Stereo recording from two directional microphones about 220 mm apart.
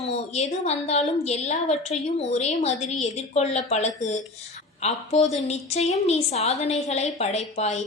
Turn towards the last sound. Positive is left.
turn(degrees=30)  # may be behind; listen again after turning